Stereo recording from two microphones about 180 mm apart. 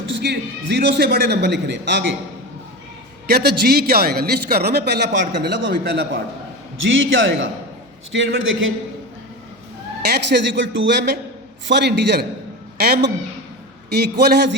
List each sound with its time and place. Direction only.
0.1 s a man's voice: 65° right (ahead or behind)
3.2 s a man's voice: 60° right (ahead or behind); by 5.7 s 80° right
5.7 s a man's voice: 60° right (ahead or behind)
6.8 s a man's voice: 90° right
10.1 s a man's voice: 75° right (ahead or behind)
11.7 s a man's voice: 70° right (ahead or behind)